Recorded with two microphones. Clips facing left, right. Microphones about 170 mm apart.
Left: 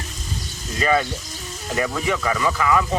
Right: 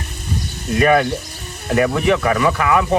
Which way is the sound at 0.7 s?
65° right (ahead or behind).